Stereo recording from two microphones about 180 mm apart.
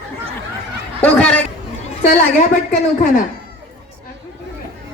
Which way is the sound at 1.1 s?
5° left (ahead or behind).